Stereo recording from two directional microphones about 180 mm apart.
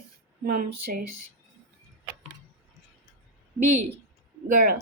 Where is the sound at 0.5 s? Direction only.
55° right (ahead or behind).